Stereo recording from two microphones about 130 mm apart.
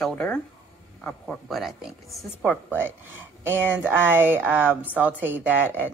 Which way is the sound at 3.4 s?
15° right (ahead or behind).